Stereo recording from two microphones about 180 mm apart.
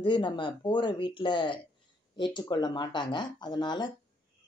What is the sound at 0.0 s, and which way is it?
Speech, 25° left (ahead or behind).